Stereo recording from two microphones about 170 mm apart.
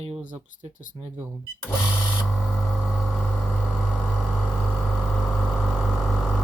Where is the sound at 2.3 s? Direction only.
Centre (ahead or behind).